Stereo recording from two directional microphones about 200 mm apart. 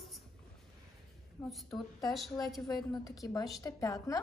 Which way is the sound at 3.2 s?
15° left (ahead or behind).